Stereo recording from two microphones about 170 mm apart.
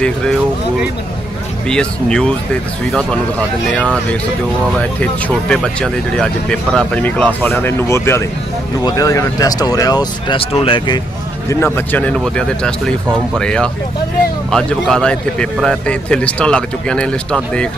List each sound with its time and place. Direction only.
0.0 s a man's voice: 5° left (ahead or behind); by 11.0 s 30° left (ahead or behind)
11.4 s a man's voice: 15° left (ahead or behind)